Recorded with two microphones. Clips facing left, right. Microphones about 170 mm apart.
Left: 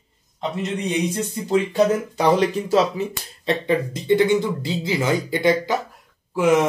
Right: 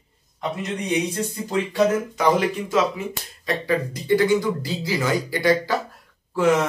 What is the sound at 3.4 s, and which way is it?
Speech, 25° left (ahead or behind).